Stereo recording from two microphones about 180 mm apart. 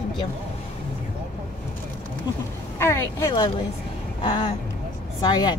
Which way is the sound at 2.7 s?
15° left (ahead or behind).